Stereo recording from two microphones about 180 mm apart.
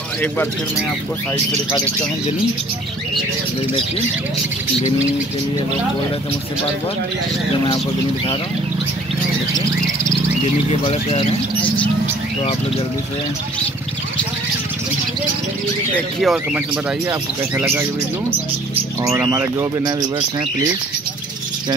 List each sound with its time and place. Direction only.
0.2 s speech: 15° left (ahead or behind)
10.9 s speech: 35° left (ahead or behind)
16.2 s speech: centre (ahead or behind)
17.1 s speech: 15° right (ahead or behind)
19.0 s speech: 15° right (ahead or behind)